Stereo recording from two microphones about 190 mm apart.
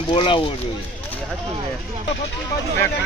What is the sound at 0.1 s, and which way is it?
Speech, 25° left (ahead or behind).